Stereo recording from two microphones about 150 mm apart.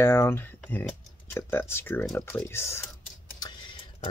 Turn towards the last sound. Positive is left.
turn(degrees=35)  # may be behind; listen again after turning